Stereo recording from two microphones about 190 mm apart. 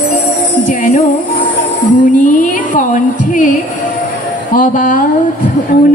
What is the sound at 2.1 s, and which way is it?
A woman's voice, 45° left (ahead or behind).